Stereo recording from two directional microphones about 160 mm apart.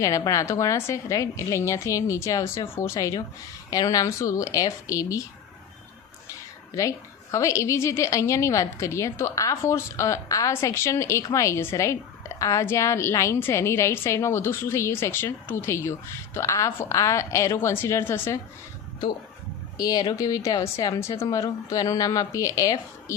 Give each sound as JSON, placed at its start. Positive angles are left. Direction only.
{"t": 0.0, "sound": "a woman's voice", "side_deg": 20}
{"t": 6.7, "sound": "a woman's voice", "side_deg": 20}
{"t": 19.7, "sound": "a woman's voice", "side_deg": 25}